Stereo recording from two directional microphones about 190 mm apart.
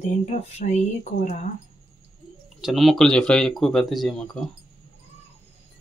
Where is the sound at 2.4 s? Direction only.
Centre (ahead or behind).